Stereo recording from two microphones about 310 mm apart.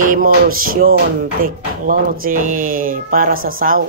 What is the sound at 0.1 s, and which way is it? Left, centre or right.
Speech, right.